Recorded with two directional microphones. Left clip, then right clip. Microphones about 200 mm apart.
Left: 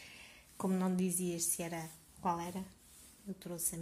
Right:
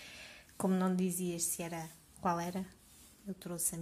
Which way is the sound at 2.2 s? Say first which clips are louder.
Right 2 dB; 25° right (ahead or behind).